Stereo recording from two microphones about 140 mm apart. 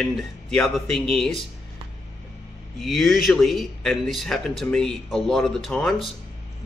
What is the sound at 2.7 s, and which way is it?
Speech, centre (ahead or behind).